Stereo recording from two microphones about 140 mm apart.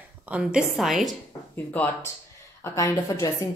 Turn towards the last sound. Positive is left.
turn(degrees=25)  # may be behind; listen again after turning